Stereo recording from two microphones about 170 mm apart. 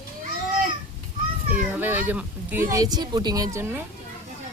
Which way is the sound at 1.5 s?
10° right (ahead or behind).